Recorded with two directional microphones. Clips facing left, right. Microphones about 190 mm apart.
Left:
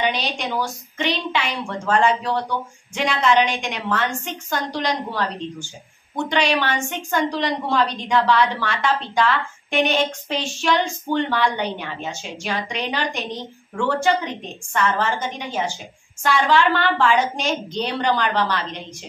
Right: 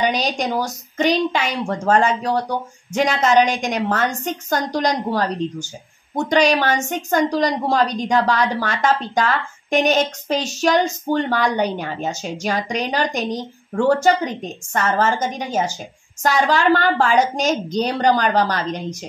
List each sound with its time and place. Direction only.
0.0 s a woman's voice: 40° right (ahead or behind)